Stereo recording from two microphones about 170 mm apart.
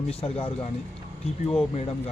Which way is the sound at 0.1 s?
35° left (ahead or behind).